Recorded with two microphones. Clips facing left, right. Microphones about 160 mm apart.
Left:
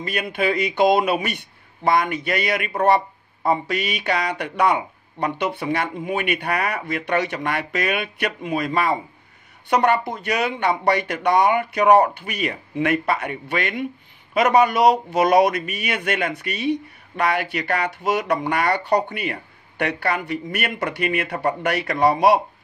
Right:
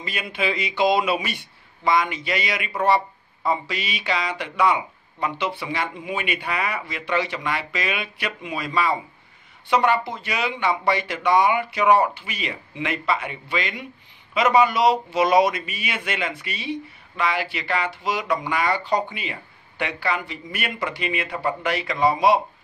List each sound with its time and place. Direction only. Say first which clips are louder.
0.0 s speech: left 4 dB; 55° left (ahead or behind)